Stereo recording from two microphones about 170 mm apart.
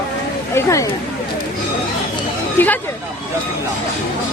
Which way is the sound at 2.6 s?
10° left (ahead or behind).